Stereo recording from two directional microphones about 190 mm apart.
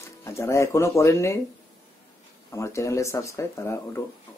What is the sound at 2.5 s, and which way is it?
Speech, 15° left (ahead or behind).